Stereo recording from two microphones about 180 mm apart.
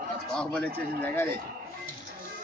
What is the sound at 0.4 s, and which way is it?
Speech, 5° left (ahead or behind).